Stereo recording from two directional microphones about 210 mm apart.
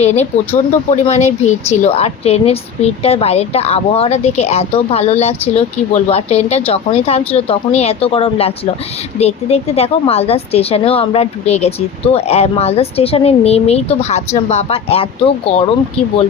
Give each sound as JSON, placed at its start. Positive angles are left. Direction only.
{"t": 0.0, "sound": "a woman's voice", "side_deg": 30}